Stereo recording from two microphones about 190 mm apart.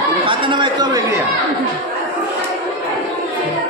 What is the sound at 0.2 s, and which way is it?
Chatter, 25° right (ahead or behind).